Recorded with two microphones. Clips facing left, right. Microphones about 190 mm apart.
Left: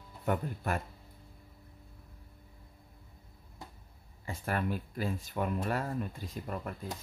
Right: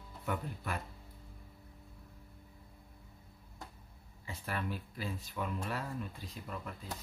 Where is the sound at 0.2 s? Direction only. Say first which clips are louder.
Left 6 dB; 45° left (ahead or behind).